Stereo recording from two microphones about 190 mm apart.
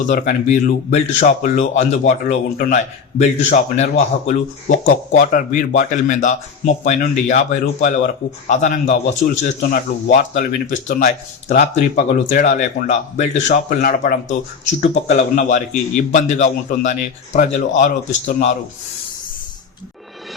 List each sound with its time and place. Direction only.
0.1 s speech: 40° left (ahead or behind)